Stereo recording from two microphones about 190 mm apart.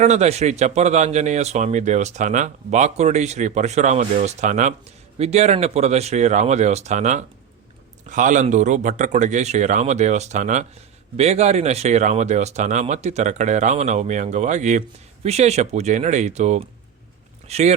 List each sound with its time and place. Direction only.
0.0 s speech: 35° right (ahead or behind)